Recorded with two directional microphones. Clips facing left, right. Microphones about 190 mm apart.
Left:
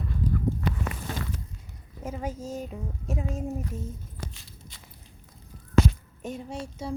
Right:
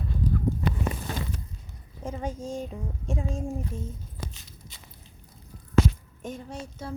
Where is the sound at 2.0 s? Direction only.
5° left (ahead or behind).